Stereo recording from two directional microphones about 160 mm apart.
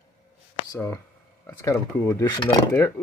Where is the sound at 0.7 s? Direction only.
15° left (ahead or behind).